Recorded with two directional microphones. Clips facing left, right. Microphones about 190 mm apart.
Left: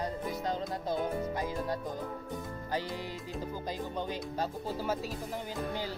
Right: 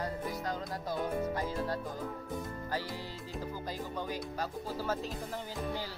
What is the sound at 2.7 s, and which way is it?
Music, 20° left (ahead or behind).